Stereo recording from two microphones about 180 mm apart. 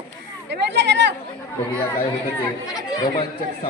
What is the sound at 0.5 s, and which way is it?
Speech, 75° right (ahead or behind).